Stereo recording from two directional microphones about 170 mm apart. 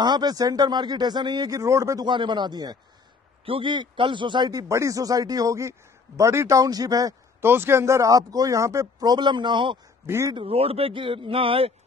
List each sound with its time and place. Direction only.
0.0 s speech: 25° right (ahead or behind)
10.0 s speech: 15° right (ahead or behind)
10.3 s speech: 35° right (ahead or behind)